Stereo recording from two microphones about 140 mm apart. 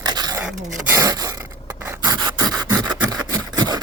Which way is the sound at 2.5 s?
30° right (ahead or behind).